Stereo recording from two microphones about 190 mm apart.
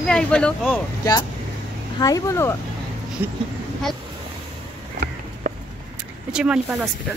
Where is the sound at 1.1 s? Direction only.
20° left (ahead or behind).